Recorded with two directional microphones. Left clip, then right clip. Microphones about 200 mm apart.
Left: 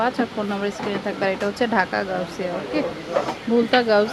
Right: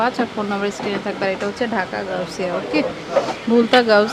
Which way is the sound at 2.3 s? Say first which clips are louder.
Right 4 dB; 15° right (ahead or behind).